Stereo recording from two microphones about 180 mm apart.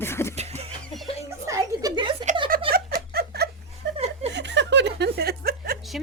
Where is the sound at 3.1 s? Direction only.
65° right (ahead or behind).